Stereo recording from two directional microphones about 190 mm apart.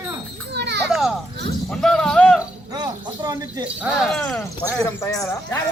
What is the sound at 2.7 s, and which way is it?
Speech, 20° right (ahead or behind).